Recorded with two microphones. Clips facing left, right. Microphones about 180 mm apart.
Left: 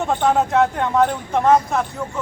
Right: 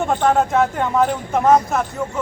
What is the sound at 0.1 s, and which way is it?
Speech, centre (ahead or behind).